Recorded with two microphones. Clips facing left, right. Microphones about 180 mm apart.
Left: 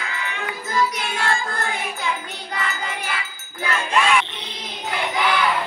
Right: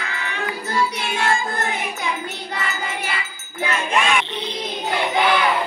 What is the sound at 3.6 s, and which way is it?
Music, 20° right (ahead or behind).